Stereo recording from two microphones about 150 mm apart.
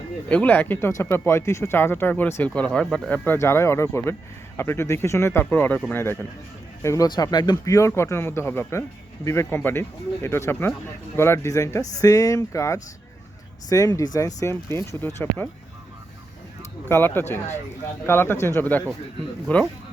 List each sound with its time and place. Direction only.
0.3 s speech: 10° left (ahead or behind)
16.9 s speech: 15° left (ahead or behind)